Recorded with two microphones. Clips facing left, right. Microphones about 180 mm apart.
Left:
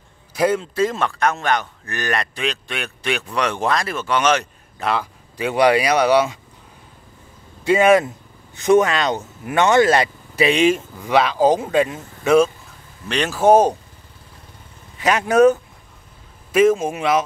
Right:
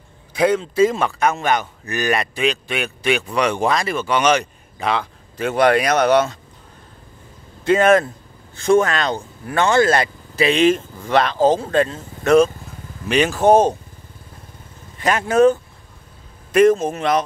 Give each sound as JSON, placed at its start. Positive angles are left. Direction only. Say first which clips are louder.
{"t": 0.3, "sound": "a man's voice", "louder": "right 1 dB", "side_deg": 5}
{"t": 7.6, "sound": "speech", "louder": "even", "side_deg": 10}
{"t": 15.0, "sound": "a man's voice", "louder": "left 1 dB", "side_deg": 5}